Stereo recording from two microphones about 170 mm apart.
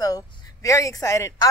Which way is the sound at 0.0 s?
20° left (ahead or behind).